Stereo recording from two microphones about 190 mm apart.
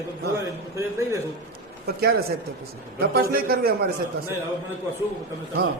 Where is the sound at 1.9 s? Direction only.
55° right (ahead or behind).